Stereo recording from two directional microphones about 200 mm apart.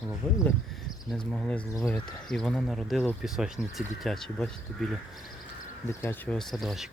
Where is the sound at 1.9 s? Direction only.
5° left (ahead or behind).